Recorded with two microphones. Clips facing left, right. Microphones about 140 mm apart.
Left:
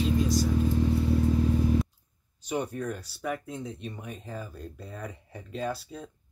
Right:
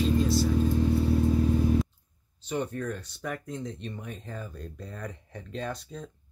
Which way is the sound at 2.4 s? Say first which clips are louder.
Even; 10° left (ahead or behind).